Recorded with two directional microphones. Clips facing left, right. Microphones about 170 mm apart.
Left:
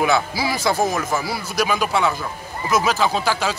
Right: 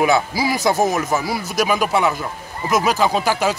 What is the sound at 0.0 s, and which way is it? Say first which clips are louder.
Speech: right 2 dB; 15° right (ahead or behind).